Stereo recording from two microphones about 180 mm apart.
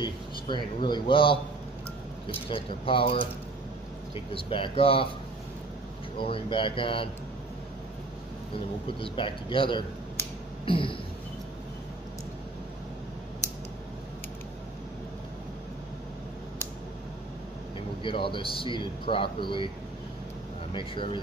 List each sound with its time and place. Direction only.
0.0 s a man's voice: 25° left (ahead or behind)
6.1 s a man's voice: 30° left (ahead or behind)
8.8 s a man's voice: 30° left (ahead or behind)
10.6 s throat clearing: 30° left (ahead or behind)
18.0 s a man's voice: 30° left (ahead or behind)
20.7 s a man's voice: 30° left (ahead or behind)